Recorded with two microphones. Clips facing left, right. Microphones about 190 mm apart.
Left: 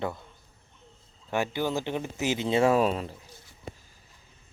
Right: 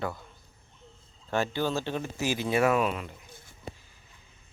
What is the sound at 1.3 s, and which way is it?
Speech, 15° left (ahead or behind).